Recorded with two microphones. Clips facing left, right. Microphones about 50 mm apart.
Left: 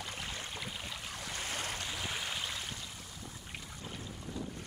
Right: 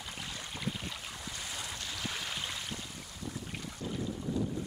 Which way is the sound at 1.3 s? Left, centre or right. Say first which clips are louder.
Left 5 dB; left.